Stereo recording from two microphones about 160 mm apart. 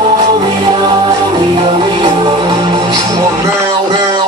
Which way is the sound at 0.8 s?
25° right (ahead or behind).